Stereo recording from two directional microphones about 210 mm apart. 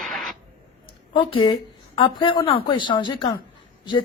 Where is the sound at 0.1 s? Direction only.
Centre (ahead or behind).